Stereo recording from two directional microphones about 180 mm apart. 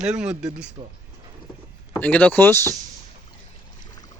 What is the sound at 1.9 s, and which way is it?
Speech, 10° left (ahead or behind).